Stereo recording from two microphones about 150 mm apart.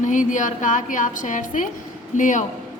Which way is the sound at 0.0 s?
60° left (ahead or behind).